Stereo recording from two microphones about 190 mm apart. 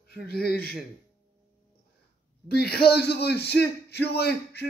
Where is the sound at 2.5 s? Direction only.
55° left (ahead or behind).